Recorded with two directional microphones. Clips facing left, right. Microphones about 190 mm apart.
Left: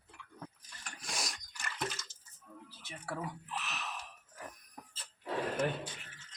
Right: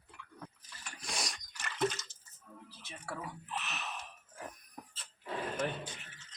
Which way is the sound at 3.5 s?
Centre (ahead or behind).